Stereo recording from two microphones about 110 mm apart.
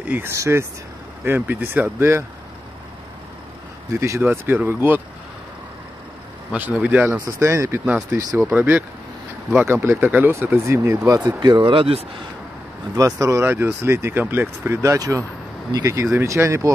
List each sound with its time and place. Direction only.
0.1 s speech: 25° right (ahead or behind)
3.9 s speech: 25° right (ahead or behind)
6.5 s speech: 15° right (ahead or behind)
7.2 s speech: 30° right (ahead or behind)
7.8 s speech: 15° right (ahead or behind)
11.2 s speech: 35° right (ahead or behind); by 12.0 s 55° right (ahead or behind)
12.9 s speech: 30° right (ahead or behind)